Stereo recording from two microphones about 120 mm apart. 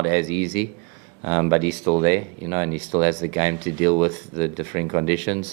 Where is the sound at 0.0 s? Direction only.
20° right (ahead or behind).